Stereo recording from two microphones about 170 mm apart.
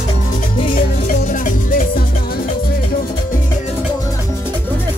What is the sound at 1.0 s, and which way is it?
Music, 50° left (ahead or behind).